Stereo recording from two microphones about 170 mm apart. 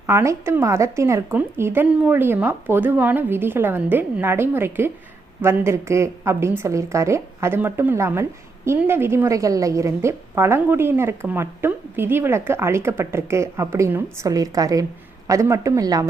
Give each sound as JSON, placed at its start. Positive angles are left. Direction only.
{"t": 0.1, "sound": "a woman's voice", "side_deg": -15}